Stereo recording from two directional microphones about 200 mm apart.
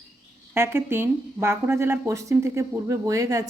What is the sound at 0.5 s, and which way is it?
Speech, 10° right (ahead or behind).